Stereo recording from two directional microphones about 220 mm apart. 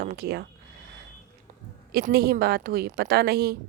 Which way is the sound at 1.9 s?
45° right (ahead or behind).